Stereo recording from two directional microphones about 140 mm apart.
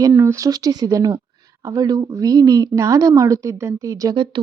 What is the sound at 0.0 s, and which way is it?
Speech, 20° right (ahead or behind).